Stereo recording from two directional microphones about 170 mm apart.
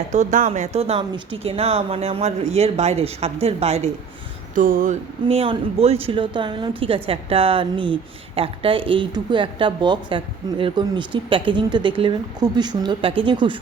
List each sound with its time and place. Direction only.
0.1 s speech: 45° right (ahead or behind)
4.5 s a sound: 55° right (ahead or behind)
5.3 s speech: 35° right (ahead or behind)